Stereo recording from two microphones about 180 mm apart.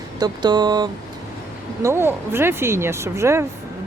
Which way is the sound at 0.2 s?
25° right (ahead or behind).